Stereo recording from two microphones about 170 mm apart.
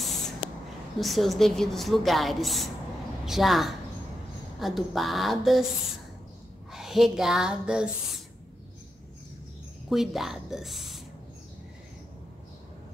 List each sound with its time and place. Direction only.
0.0 s spray: centre (ahead or behind)
0.9 s a woman's voice: centre (ahead or behind)
6.7 s a sound: centre (ahead or behind)
9.8 s a woman's voice: centre (ahead or behind)